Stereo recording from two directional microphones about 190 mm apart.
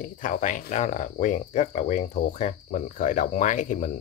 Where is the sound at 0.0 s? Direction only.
45° left (ahead or behind).